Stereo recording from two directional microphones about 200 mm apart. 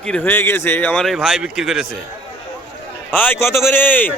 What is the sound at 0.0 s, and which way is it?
Speech, 5° left (ahead or behind).